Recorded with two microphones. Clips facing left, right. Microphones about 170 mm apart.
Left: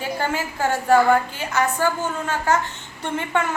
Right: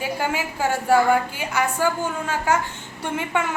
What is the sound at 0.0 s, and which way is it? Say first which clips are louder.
A woman's voice: even; 10° right (ahead or behind).